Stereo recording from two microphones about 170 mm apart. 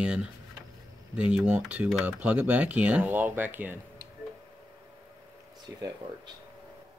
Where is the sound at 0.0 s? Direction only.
5° right (ahead or behind).